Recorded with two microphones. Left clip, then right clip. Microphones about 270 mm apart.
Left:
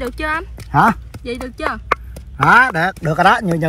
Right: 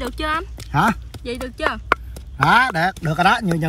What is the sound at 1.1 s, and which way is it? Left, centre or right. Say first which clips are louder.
Speech: left 2 dB; centre.